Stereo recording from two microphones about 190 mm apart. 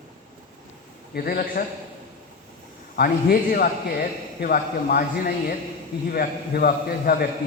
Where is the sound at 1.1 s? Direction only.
55° left (ahead or behind).